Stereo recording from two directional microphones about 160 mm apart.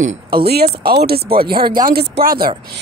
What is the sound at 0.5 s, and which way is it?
Speech, 80° right.